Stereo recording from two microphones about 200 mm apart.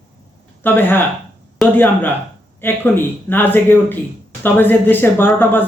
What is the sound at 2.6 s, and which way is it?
Speech, 10° left (ahead or behind).